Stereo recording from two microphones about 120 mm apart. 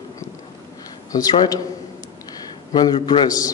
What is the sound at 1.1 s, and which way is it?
Speech, 30° left (ahead or behind).